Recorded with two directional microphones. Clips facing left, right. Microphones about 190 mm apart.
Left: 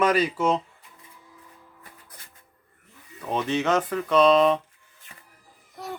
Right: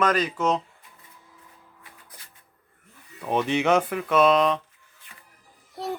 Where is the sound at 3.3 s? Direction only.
15° right (ahead or behind); by 4.6 s centre (ahead or behind).